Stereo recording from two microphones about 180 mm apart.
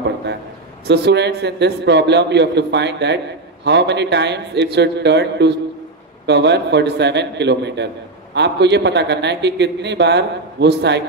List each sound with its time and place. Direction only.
0.8 s a man's voice: 70° right (ahead or behind)